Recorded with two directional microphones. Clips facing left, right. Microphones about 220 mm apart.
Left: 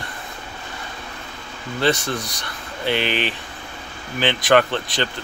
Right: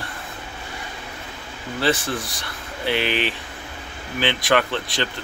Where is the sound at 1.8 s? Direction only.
5° right (ahead or behind).